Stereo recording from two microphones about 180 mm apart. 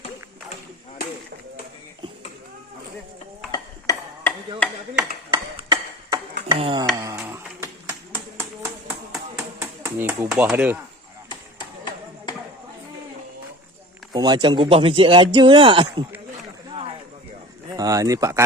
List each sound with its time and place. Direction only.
3.5 s a sound: 20° left (ahead or behind)
5.3 s chop: 20° right (ahead or behind)
6.5 s speech: 30° right (ahead or behind)
6.9 s a sound: 15° right (ahead or behind)
10.5 s speech: 10° right (ahead or behind)
14.1 s speech: 25° right (ahead or behind)
17.7 s speech: 20° right (ahead or behind)